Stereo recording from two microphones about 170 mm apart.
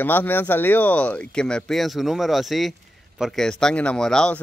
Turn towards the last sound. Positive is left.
turn(degrees=5)  # may be behind; listen again after turning